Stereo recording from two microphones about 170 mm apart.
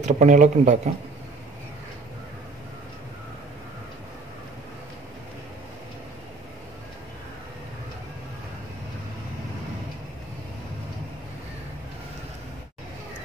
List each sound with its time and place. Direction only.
0.0 s speech: 45° right (ahead or behind)